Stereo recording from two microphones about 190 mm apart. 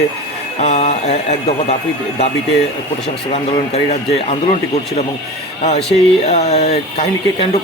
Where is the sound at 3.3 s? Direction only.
35° left (ahead or behind).